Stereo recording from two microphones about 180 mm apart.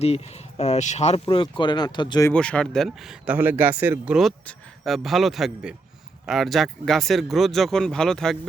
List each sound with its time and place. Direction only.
0.0 s speech: 35° left (ahead or behind)
2.3 s speech: 5° left (ahead or behind)